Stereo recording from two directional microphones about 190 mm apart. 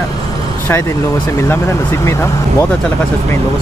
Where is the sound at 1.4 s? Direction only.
15° left (ahead or behind).